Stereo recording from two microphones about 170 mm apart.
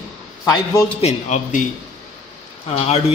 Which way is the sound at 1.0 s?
45° left (ahead or behind).